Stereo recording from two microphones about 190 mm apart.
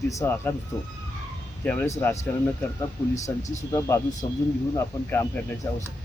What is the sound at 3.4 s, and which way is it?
Speech, 40° left (ahead or behind).